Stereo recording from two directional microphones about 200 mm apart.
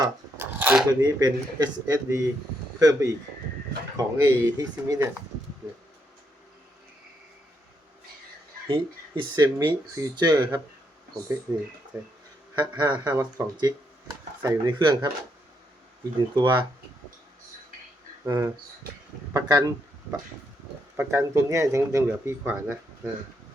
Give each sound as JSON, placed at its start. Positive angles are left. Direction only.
{"t": 0.0, "sound": "a sound", "side_deg": -10}
{"t": 1.0, "sound": "speech", "side_deg": -20}
{"t": 8.6, "sound": "speech", "side_deg": -25}
{"t": 12.5, "sound": "speech", "side_deg": -20}
{"t": 16.3, "sound": "speech", "side_deg": -20}
{"t": 18.3, "sound": "speech", "side_deg": -15}